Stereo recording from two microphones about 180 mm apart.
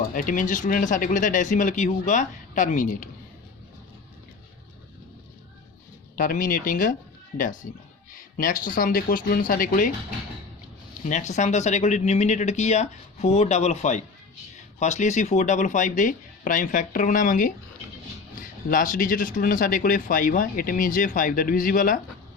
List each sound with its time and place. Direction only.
0.1 s speech: 50° left (ahead or behind)
6.1 s speech: 50° left (ahead or behind)
11.0 s speech: 40° left (ahead or behind)